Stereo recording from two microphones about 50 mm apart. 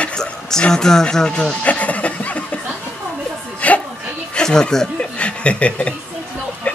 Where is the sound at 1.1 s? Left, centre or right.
Centre.